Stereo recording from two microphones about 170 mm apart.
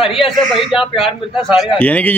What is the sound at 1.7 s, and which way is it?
Speech, 10° left (ahead or behind).